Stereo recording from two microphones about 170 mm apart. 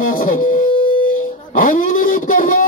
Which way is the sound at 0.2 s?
55° left (ahead or behind).